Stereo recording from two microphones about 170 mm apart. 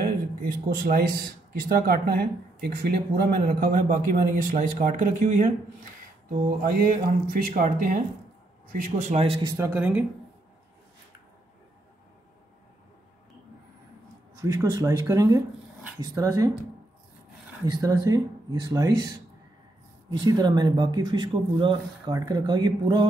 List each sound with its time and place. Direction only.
0.0 s speech: 55° right (ahead or behind)
6.6 s speech: 55° right (ahead or behind)
9.1 s a man's voice: 35° right (ahead or behind)
9.4 s speech: 20° right (ahead or behind)
9.8 s speech: 10° right (ahead or behind)
14.4 s speech: 20° right (ahead or behind)
17.6 s speech: 20° right (ahead or behind)